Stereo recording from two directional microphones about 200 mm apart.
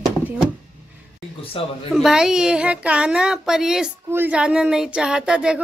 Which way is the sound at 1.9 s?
5° right (ahead or behind).